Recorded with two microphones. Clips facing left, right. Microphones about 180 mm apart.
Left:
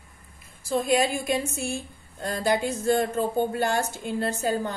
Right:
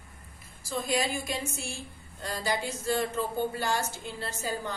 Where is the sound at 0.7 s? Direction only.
55° left (ahead or behind).